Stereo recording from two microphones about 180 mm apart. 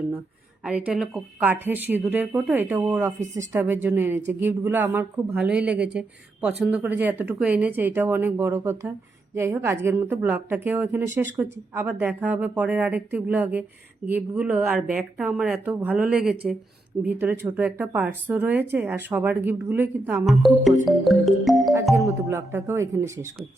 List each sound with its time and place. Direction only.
0.6 s speech: 5° right (ahead or behind)
20.2 s music: centre (ahead or behind)
22.3 s speech: 15° right (ahead or behind)